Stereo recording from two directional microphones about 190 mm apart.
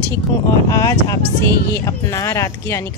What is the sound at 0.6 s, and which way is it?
Speech, 20° left (ahead or behind).